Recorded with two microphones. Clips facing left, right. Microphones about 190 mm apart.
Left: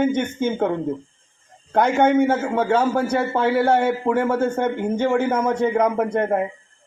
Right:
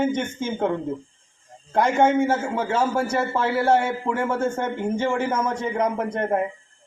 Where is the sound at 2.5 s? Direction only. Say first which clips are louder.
Left 4 dB; 65° left (ahead or behind).